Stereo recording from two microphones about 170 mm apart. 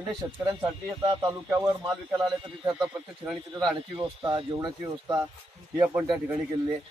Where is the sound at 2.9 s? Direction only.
5° right (ahead or behind).